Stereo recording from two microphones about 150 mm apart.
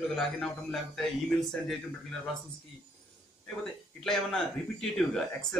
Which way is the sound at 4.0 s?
5° left (ahead or behind).